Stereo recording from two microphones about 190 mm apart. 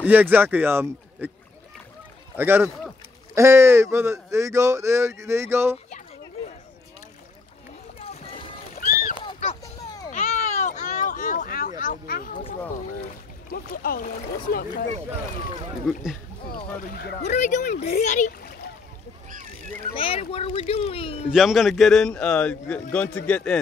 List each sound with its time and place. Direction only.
0.0 s speech: 10° right (ahead or behind)
2.3 s speech: 10° right (ahead or behind)
8.0 s vehicle: 30° left (ahead or behind)
9.2 s a sound: 25° left (ahead or behind)
10.1 s a sound: 40° left (ahead or behind)
13.0 s speech: 50° left (ahead or behind)
15.9 s a man's voice: centre (ahead or behind)
16.5 s speech: 55° left (ahead or behind)
17.3 s speech: 40° left (ahead or behind)
19.8 s speech: 30° left (ahead or behind)
21.3 s a man's voice: centre (ahead or behind)